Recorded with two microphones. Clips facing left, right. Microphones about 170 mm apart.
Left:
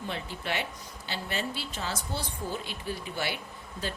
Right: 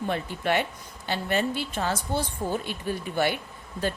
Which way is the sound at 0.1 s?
55° right (ahead or behind).